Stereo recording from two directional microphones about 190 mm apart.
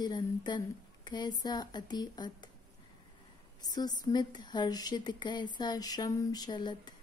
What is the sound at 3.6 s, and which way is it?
Speech, 20° left (ahead or behind).